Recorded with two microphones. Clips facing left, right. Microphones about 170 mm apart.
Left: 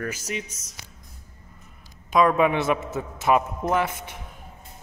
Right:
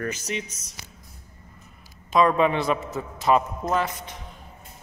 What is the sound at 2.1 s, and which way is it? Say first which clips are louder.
Speech: even; 5° left (ahead or behind).